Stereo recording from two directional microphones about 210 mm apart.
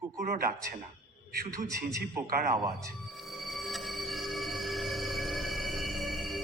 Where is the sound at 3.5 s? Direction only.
Centre (ahead or behind).